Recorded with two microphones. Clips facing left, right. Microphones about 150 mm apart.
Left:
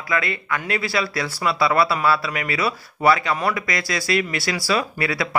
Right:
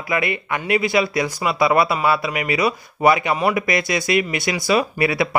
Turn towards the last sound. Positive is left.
turn(degrees=-20)  # may be behind; listen again after turning